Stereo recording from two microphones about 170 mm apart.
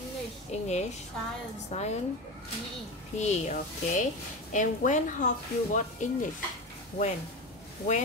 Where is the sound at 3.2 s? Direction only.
45° left (ahead or behind).